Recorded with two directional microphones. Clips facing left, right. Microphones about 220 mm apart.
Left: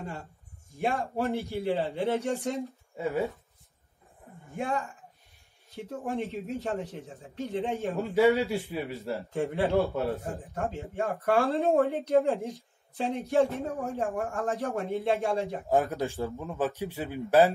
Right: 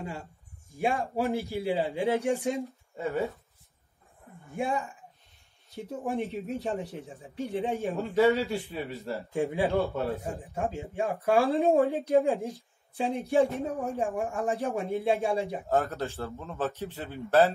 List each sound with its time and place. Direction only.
0.7 s speech: 15° right (ahead or behind)
3.0 s a man's voice: centre (ahead or behind)
4.6 s speech: 15° right (ahead or behind)
7.9 s a man's voice: centre (ahead or behind)
9.3 s speech: 15° right (ahead or behind)
9.8 s a man's voice: centre (ahead or behind)
10.3 s a woman's voice: 15° right (ahead or behind)
15.7 s a man's voice: 15° left (ahead or behind)